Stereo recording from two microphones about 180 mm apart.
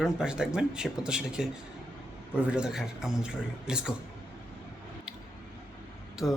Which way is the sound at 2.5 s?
5° right (ahead or behind).